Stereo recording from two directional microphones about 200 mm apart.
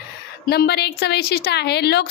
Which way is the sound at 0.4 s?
50° left (ahead or behind).